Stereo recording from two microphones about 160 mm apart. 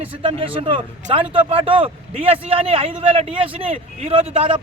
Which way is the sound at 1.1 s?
35° right (ahead or behind).